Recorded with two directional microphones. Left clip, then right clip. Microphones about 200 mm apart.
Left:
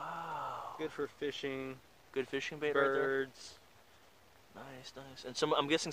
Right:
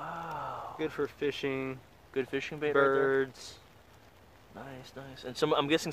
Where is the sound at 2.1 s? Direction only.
10° left (ahead or behind).